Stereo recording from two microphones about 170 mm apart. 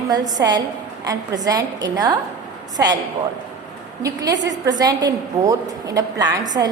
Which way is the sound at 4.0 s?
20° right (ahead or behind).